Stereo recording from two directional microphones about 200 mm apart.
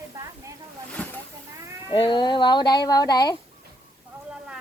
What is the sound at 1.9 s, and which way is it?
Speech, 25° left (ahead or behind).